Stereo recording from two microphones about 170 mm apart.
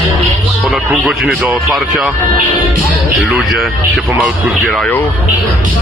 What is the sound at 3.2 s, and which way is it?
Speech, 5° right (ahead or behind).